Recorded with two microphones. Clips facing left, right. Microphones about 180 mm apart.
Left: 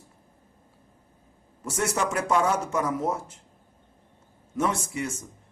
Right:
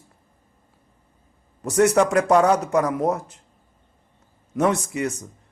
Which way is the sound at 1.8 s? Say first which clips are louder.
Right 10 dB; 65° right (ahead or behind).